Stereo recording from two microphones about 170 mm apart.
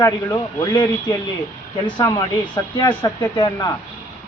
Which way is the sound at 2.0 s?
20° left (ahead or behind).